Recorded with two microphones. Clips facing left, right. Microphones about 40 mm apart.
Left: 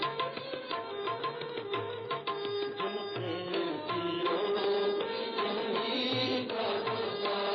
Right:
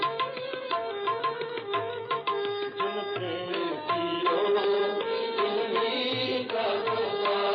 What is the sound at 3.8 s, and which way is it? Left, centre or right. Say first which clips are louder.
Music: right 5 dB; right.